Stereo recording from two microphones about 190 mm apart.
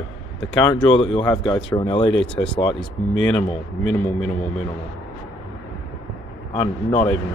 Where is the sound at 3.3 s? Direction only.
5° left (ahead or behind).